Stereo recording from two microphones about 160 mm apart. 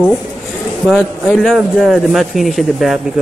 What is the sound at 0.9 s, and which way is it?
Speech, centre (ahead or behind).